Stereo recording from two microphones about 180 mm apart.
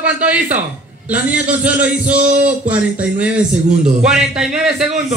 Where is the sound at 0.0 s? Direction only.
10° right (ahead or behind).